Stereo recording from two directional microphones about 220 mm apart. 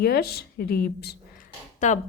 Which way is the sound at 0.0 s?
45° left (ahead or behind).